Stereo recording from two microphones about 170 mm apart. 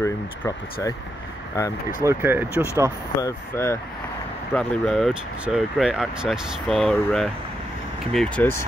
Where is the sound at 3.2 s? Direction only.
20° left (ahead or behind).